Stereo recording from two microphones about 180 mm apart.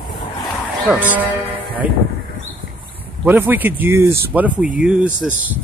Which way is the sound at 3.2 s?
10° right (ahead or behind).